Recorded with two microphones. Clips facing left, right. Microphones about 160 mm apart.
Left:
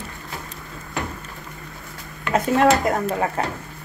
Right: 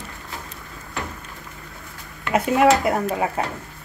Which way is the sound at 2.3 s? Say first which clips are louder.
Even; 10° right (ahead or behind).